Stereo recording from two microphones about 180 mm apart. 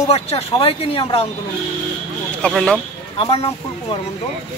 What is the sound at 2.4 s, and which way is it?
Speech, 5° left (ahead or behind).